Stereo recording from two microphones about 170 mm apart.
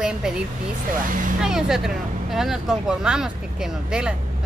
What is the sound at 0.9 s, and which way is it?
Speech, 50° right (ahead or behind).